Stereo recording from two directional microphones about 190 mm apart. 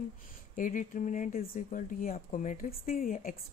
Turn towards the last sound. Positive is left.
turn(degrees=45)  # may be behind; listen again after turning